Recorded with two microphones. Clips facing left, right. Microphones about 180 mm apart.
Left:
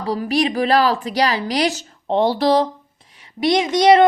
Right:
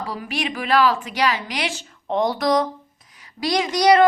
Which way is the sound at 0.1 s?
35° left (ahead or behind).